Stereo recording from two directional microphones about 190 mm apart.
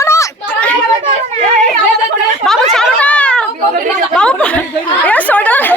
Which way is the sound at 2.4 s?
Centre (ahead or behind).